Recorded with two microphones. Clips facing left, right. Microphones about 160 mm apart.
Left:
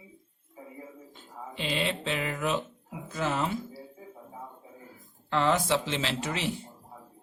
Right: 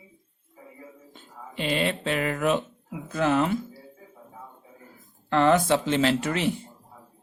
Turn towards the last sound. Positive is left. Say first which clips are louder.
# right 7 dB
turn(degrees=-55)  # may be behind; listen again after turning